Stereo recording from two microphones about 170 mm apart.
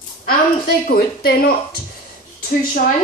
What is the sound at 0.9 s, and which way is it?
Speech, 65° left (ahead or behind).